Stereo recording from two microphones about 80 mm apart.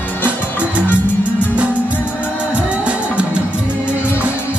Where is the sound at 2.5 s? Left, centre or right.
Centre.